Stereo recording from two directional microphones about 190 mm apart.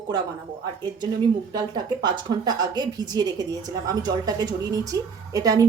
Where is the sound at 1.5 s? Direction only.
20° right (ahead or behind).